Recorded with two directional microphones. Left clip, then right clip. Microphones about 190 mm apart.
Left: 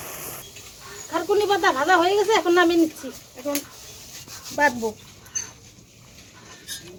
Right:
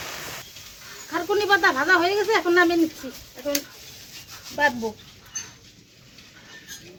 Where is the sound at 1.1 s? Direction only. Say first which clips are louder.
Even; 35° right (ahead or behind).